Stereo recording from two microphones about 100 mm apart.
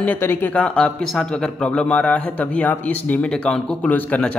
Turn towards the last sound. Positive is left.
turn(degrees=15)  # may be behind; listen again after turning